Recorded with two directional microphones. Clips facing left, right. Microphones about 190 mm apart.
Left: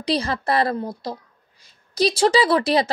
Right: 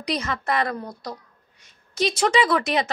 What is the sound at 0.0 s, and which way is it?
A woman's voice, 30° left (ahead or behind).